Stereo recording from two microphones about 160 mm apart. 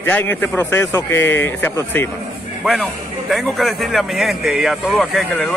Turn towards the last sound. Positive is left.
turn(degrees=0)  # may be behind; listen again after turning